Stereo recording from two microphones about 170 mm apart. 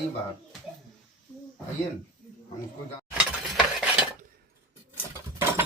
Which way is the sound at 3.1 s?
Centre (ahead or behind).